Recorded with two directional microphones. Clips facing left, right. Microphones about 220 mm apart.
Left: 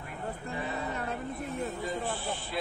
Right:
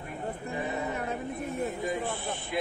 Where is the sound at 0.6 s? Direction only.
20° right (ahead or behind).